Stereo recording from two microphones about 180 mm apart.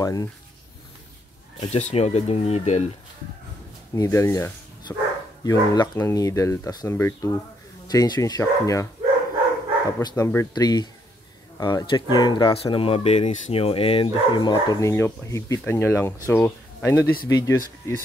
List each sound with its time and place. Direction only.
0.0 s speech: 20° left (ahead or behind)
1.7 s speech: 40° left (ahead or behind)
3.9 s speech: 15° left (ahead or behind)
9.9 s speech: 15° left (ahead or behind)